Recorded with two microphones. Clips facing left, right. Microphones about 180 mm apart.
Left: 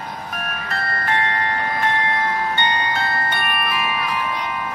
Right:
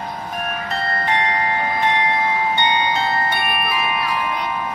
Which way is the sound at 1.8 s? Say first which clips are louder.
Right 2 dB; 15° right (ahead or behind).